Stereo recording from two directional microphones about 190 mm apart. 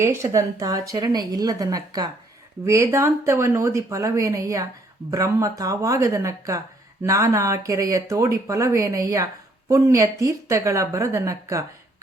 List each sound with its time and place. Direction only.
0.0 s speech: 15° right (ahead or behind)